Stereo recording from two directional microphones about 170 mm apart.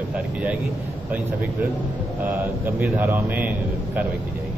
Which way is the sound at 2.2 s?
10° right (ahead or behind).